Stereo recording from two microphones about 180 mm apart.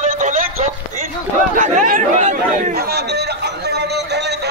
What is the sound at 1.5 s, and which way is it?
Chatter, 45° right (ahead or behind).